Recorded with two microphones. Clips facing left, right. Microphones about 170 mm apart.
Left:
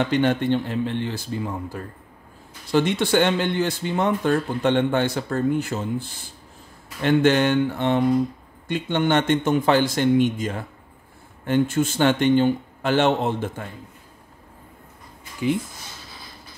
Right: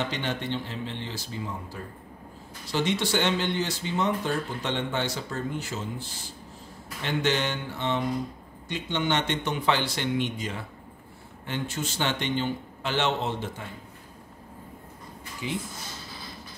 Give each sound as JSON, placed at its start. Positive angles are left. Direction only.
{"t": 0.1, "sound": "speech", "side_deg": 55}
{"t": 15.4, "sound": "speech", "side_deg": 55}